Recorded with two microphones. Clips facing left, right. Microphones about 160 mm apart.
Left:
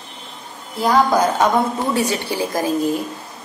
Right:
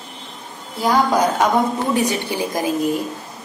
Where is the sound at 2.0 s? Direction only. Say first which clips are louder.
Even; 20° right (ahead or behind).